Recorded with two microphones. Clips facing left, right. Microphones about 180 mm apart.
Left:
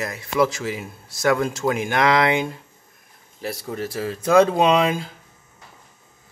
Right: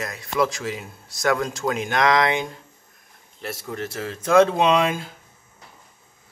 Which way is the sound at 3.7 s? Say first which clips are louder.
Left 3 dB; 5° left (ahead or behind).